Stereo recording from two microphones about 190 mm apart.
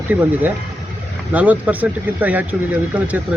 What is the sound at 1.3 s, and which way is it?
Speech, 5° right (ahead or behind).